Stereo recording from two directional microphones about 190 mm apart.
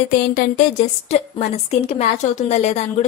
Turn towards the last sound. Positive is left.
turn(degrees=35)  # may be behind; listen again after turning